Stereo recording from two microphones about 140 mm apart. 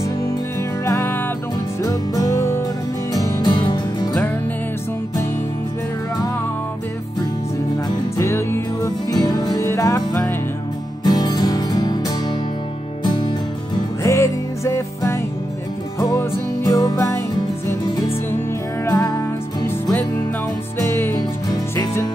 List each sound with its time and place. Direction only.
0.8 s music: 15° left (ahead or behind); by 4.1 s 35° left (ahead or behind)
8.2 s music: 20° left (ahead or behind)
13.0 s music: 30° left (ahead or behind)
14.0 s music: 20° left (ahead or behind)
18.9 s music: 25° left (ahead or behind)
20.9 s music: 15° left (ahead or behind)